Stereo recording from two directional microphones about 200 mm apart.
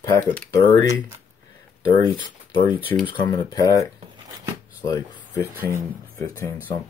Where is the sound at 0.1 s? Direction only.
15° left (ahead or behind).